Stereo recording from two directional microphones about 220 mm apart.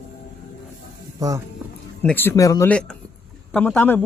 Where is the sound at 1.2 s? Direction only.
15° right (ahead or behind).